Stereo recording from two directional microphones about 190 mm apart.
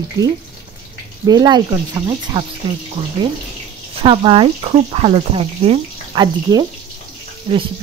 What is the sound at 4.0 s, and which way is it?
Speech, 30° right (ahead or behind).